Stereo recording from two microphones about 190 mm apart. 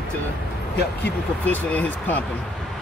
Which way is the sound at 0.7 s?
60° left (ahead or behind).